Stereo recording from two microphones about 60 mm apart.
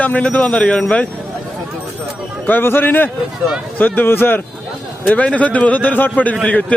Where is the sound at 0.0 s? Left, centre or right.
Left.